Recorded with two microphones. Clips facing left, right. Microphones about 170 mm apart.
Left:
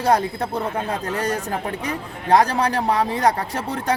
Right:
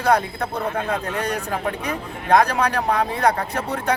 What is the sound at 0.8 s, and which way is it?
Speech, 35° left (ahead or behind).